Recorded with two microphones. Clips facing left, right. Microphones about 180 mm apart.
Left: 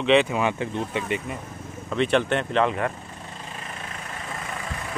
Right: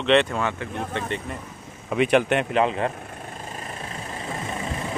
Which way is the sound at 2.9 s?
55° right (ahead or behind).